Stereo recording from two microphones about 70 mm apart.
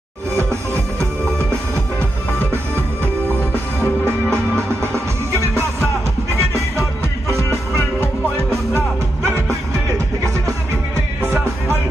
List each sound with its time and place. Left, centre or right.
0.4 s music: right
2.5 s music: right
3.3 s music: left
6.3 s music: right